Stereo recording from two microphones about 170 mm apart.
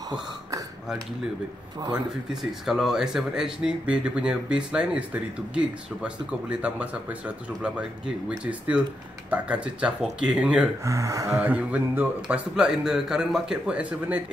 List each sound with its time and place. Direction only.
2.6 s speech: centre (ahead or behind)
10.8 s speech: 20° right (ahead or behind)